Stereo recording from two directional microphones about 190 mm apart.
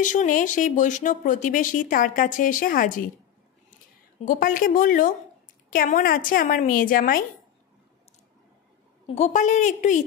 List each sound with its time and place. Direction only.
0.0 s speech: 40° left (ahead or behind)
4.2 s speech: 45° left (ahead or behind)
9.0 s a woman's voice: 35° left (ahead or behind)